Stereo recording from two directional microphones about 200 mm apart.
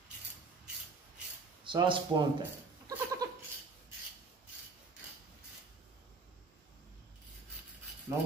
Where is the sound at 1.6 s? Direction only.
25° right (ahead or behind).